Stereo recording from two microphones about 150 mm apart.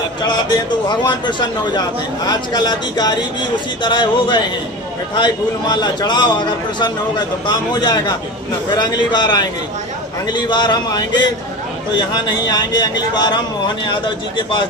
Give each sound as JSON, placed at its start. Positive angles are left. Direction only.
{"t": 0.2, "sound": "a man's voice", "side_deg": 30}